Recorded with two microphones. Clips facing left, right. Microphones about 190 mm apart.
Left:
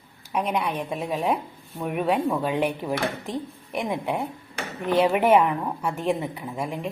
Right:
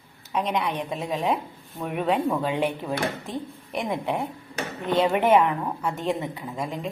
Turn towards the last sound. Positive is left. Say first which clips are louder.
# left 1 dB
turn(degrees=10)  # may be behind; listen again after turning